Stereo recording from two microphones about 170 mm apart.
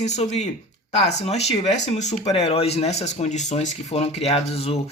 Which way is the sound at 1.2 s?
40° left (ahead or behind).